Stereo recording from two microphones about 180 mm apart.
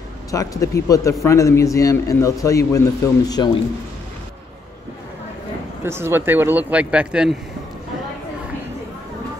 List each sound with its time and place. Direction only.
0.3 s a man's voice: 20° left (ahead or behind)
5.9 s a man's voice: 15° right (ahead or behind)